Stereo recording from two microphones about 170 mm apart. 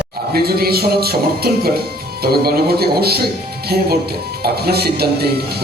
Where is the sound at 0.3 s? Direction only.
65° right (ahead or behind).